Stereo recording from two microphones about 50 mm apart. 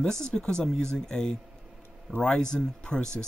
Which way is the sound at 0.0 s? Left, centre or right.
Centre.